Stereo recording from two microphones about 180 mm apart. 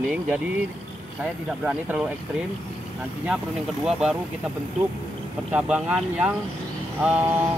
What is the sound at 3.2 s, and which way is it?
Speech, 5° right (ahead or behind).